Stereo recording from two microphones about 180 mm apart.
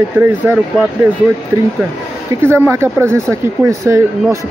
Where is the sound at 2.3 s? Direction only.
15° right (ahead or behind).